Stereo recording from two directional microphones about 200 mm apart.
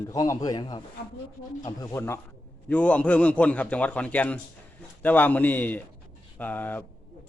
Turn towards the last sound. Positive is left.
turn(degrees=10)  # may be behind; listen again after turning